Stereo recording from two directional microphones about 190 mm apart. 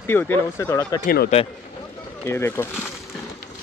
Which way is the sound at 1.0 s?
55° left (ahead or behind).